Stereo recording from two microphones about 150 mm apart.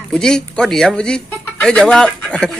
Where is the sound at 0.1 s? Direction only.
5° left (ahead or behind).